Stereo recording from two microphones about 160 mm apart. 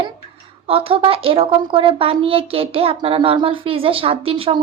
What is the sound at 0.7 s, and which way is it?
Speech, 35° right (ahead or behind).